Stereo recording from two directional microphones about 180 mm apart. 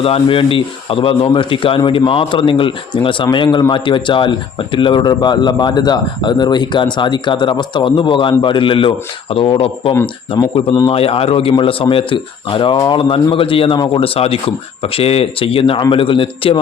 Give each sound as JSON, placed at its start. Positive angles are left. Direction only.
{"t": 0.0, "sound": "a man's voice", "side_deg": 30}
{"t": 9.9, "sound": "a man's voice", "side_deg": 15}